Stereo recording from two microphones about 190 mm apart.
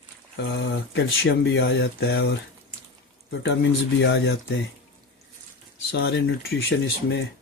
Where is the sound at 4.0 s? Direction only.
60° left (ahead or behind).